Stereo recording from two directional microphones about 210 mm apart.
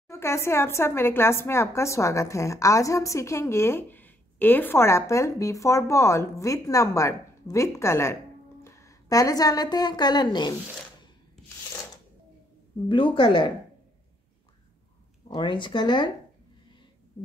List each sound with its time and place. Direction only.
0.1 s a woman's voice: 15° left (ahead or behind)
12.8 s speech: 25° left (ahead or behind)
15.2 s speech: 20° left (ahead or behind)